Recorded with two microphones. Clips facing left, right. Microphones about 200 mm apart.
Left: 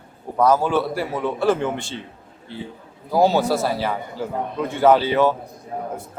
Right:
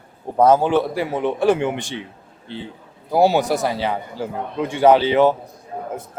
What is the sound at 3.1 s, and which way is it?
Speech, 15° right (ahead or behind).